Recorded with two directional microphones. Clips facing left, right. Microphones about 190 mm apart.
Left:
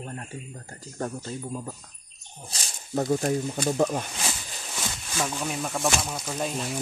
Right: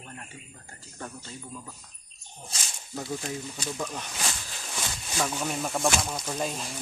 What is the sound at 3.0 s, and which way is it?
Speech, 50° left (ahead or behind).